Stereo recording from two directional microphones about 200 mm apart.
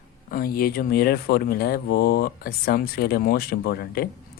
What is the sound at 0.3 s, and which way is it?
Speech, 45° left (ahead or behind).